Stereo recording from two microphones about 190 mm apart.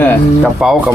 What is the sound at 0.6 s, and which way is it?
Speech, 5° right (ahead or behind).